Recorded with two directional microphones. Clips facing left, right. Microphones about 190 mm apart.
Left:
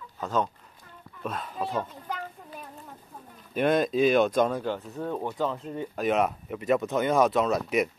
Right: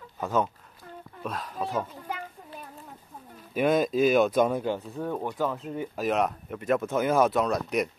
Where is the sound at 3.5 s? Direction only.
5° right (ahead or behind).